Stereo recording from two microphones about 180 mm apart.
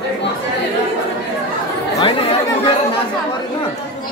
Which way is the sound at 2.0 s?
30° left (ahead or behind).